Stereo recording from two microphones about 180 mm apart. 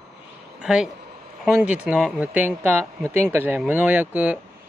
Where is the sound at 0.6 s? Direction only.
5° right (ahead or behind).